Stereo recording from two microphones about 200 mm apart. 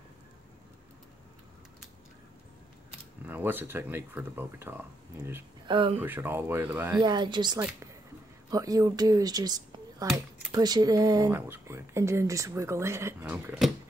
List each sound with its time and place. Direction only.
3.3 s speech: 10° right (ahead or behind)
5.7 s speech: 25° right (ahead or behind)
5.9 s speech: 10° right (ahead or behind)
7.0 s speech: 20° right (ahead or behind); by 13.7 s 5° right (ahead or behind)